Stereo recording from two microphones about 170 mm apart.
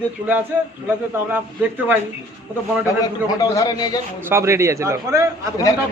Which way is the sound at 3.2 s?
20° left (ahead or behind).